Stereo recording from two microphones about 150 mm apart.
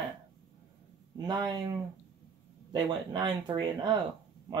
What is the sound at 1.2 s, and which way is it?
Speech, 30° right (ahead or behind).